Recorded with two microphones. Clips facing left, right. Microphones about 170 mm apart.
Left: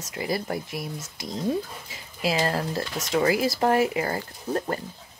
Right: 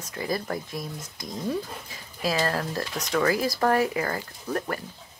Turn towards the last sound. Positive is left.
turn(degrees=25)  # may be behind; listen again after turning